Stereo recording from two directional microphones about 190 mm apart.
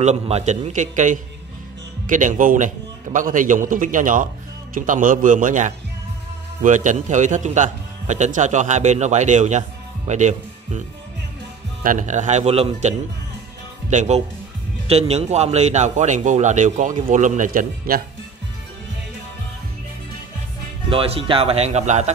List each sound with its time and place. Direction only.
0.0 s a man's voice: 35° right (ahead or behind)
11.8 s speech: 45° right (ahead or behind)
20.9 s speech: 30° right (ahead or behind)